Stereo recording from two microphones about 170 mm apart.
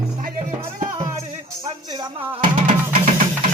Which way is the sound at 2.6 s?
50° right (ahead or behind).